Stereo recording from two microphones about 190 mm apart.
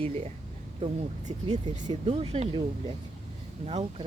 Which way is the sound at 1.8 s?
30° right (ahead or behind).